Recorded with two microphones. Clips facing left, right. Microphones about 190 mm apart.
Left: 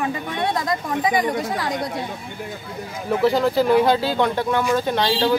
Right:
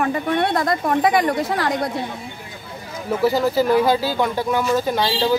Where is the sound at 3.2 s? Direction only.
5° right (ahead or behind).